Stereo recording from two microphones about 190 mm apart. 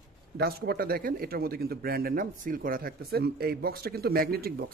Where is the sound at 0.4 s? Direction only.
55° right (ahead or behind).